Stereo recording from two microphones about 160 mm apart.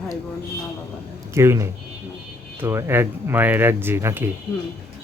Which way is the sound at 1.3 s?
15° right (ahead or behind).